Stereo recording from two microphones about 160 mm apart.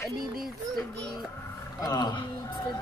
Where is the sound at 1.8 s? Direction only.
25° left (ahead or behind).